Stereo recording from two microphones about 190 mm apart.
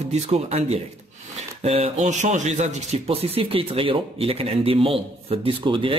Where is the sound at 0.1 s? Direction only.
35° right (ahead or behind).